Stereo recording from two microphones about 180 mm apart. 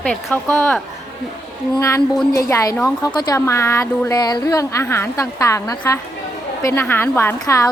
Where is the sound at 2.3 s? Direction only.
15° left (ahead or behind).